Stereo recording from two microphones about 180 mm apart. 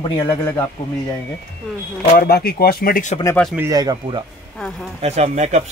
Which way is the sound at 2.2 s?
55° left (ahead or behind).